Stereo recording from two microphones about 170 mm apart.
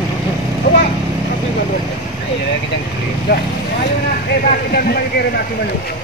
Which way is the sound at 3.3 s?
65° left (ahead or behind).